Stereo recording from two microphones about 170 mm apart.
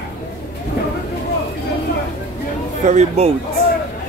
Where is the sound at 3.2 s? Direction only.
40° right (ahead or behind).